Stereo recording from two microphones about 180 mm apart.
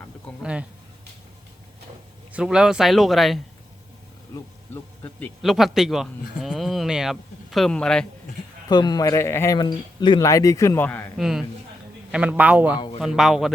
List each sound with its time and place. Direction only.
2.3 s speech: 5° right (ahead or behind)
4.7 s speech: 10° left (ahead or behind)
5.4 s speech: centre (ahead or behind)
8.7 s speech: 20° left (ahead or behind)
11.2 s a man's voice: centre (ahead or behind)